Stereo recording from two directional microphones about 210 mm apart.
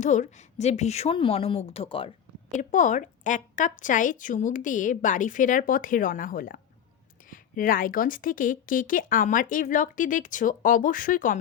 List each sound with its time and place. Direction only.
0.0 s a woman's voice: 35° left (ahead or behind)